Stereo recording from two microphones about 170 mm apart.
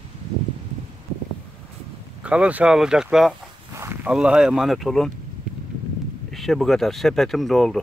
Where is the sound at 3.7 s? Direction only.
15° right (ahead or behind).